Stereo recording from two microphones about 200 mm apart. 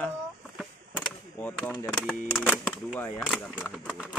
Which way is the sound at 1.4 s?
10° left (ahead or behind).